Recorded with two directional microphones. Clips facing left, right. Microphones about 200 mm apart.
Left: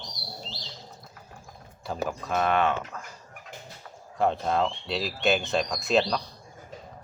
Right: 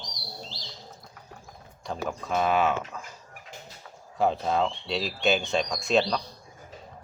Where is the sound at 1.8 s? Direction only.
Centre (ahead or behind).